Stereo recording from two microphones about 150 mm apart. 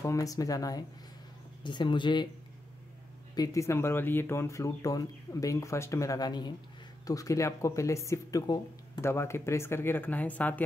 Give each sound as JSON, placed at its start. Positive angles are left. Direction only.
{"t": 0.0, "sound": "speech", "side_deg": 20}
{"t": 3.3, "sound": "speech", "side_deg": 20}